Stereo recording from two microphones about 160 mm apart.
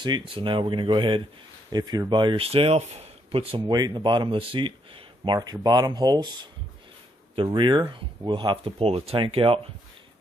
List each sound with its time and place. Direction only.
0.0 s speech: 30° right (ahead or behind)